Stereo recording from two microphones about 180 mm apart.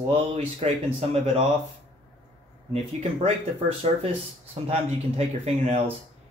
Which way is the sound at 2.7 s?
35° right (ahead or behind).